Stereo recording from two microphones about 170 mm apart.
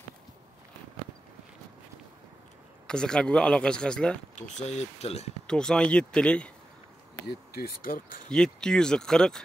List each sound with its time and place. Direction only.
2.9 s speech: 5° left (ahead or behind)
4.6 s speech: 40° left (ahead or behind)
5.5 s speech: 5° left (ahead or behind)
7.2 s speech: 60° left (ahead or behind)
8.3 s speech: 5° left (ahead or behind)